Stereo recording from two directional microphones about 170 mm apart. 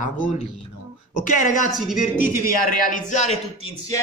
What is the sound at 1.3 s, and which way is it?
Speech, 50° left (ahead or behind).